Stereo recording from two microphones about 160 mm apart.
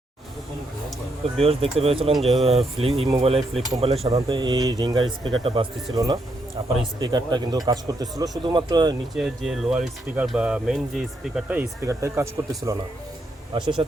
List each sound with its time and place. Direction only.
1.2 s speech: 40° right (ahead or behind)
2.1 s speech: centre (ahead or behind)
2.6 s speech: 40° right (ahead or behind)
9.1 s speech: centre (ahead or behind); by 12.7 s 20° right (ahead or behind)
13.5 s speech: 30° right (ahead or behind)